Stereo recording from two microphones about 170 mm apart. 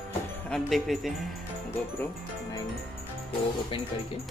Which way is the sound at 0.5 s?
Centre (ahead or behind).